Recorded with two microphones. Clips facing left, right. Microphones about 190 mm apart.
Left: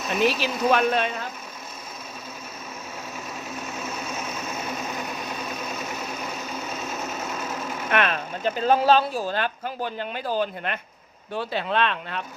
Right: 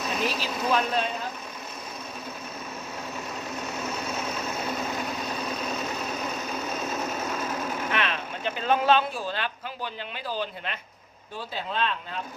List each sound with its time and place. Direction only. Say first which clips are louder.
0.3 s speech: left 6 dB; 70° left (ahead or behind)
7.9 s speech: left 5 dB; 50° left (ahead or behind)
11.3 s speech: left 6 dB; 70° left (ahead or behind)